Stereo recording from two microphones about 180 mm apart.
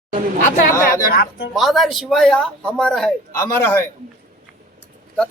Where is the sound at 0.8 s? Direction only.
55° left (ahead or behind).